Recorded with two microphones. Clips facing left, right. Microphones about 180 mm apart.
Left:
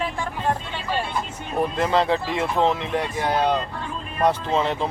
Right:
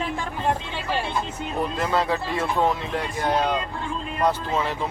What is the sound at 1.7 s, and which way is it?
Speech, 25° left (ahead or behind).